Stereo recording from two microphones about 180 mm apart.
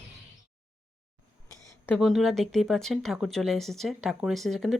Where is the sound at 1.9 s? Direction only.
Centre (ahead or behind).